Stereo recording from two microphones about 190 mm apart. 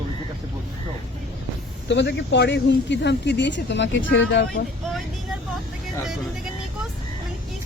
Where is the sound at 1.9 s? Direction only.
70° left (ahead or behind).